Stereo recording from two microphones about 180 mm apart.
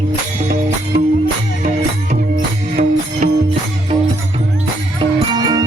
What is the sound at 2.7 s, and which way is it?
Music, 40° right (ahead or behind).